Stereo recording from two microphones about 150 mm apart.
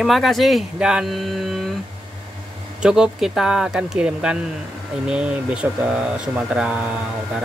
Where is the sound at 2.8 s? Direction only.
5° right (ahead or behind).